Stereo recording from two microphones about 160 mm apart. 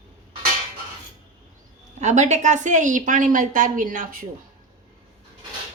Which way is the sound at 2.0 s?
45° right (ahead or behind).